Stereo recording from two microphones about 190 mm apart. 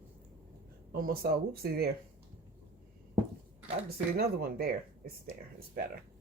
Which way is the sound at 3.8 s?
55° right (ahead or behind).